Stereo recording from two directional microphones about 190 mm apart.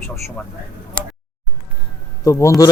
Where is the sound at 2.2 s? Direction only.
15° left (ahead or behind).